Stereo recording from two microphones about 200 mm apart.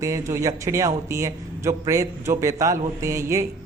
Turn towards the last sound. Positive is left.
turn(degrees=-15)  # may be behind; listen again after turning